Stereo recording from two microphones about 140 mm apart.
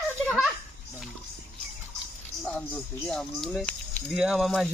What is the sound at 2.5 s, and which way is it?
Speech, 5° left (ahead or behind).